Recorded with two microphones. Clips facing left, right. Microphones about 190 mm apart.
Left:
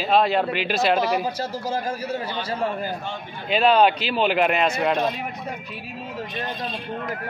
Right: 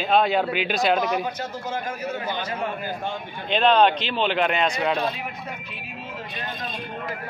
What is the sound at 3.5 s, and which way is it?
Speech, 5° left (ahead or behind).